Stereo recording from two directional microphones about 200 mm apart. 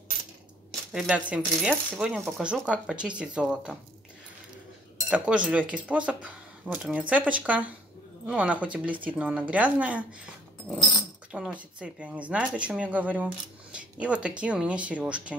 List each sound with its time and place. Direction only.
0.9 s speech: 5° right (ahead or behind)
4.9 s speech: 5° right (ahead or behind)
11.3 s speech: 5° right (ahead or behind)